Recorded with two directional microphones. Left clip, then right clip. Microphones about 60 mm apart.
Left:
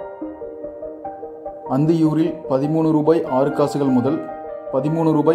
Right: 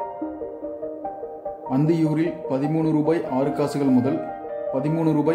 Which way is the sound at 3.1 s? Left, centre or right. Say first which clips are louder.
Left 5 dB; left.